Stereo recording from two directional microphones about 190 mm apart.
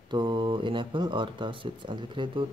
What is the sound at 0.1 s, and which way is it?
Speech, 25° right (ahead or behind).